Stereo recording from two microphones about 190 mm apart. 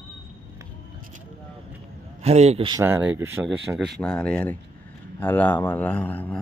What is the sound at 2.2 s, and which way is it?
Speech, 35° right (ahead or behind).